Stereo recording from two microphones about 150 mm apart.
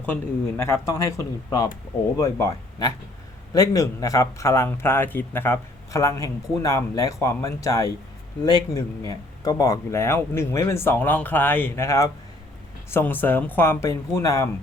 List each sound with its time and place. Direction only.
0.0 s speech: 10° left (ahead or behind)